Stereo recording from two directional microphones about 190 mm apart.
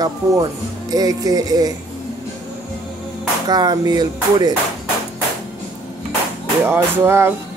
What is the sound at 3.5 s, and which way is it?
Speech, 20° right (ahead or behind).